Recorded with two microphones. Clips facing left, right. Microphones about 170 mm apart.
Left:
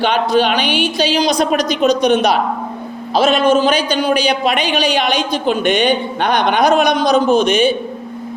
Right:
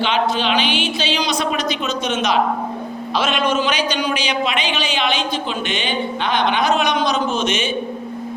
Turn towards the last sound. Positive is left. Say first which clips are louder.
# left 8 dB
turn(degrees=35)  # may be behind; listen again after turning